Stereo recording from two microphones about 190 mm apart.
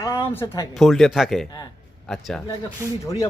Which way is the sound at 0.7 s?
Centre (ahead or behind).